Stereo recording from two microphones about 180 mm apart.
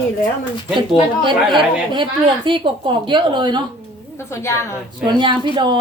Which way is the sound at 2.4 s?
25° right (ahead or behind).